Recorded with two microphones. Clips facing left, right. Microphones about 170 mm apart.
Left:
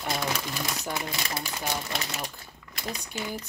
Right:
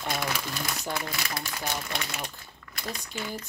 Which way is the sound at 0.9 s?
20° left (ahead or behind).